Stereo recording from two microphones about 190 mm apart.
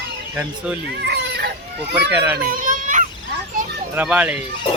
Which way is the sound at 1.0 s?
60° right (ahead or behind).